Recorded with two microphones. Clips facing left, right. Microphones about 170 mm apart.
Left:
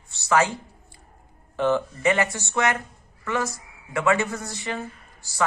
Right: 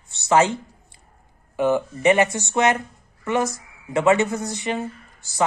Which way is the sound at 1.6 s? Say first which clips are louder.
Right 2 dB; 10° right (ahead or behind).